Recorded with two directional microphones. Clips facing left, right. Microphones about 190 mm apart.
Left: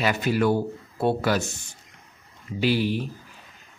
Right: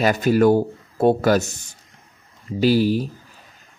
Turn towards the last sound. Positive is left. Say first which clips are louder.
# right 6 dB
turn(degrees=-40)  # may be behind; listen again after turning